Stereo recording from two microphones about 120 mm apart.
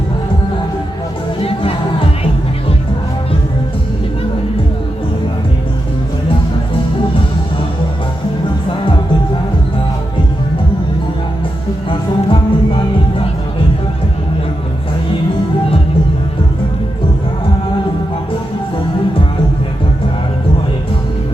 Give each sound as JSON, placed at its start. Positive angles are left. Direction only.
{"t": 1.4, "sound": "music", "side_deg": 50}
{"t": 11.9, "sound": "music", "side_deg": 50}